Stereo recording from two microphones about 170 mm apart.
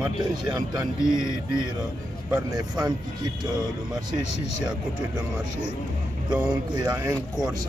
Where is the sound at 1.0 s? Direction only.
5° right (ahead or behind).